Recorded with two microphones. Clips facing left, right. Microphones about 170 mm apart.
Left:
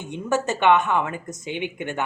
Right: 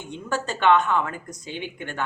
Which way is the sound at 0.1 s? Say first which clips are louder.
Left 5 dB; 20° left (ahead or behind).